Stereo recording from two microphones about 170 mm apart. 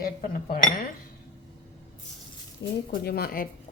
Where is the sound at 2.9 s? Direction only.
65° left (ahead or behind).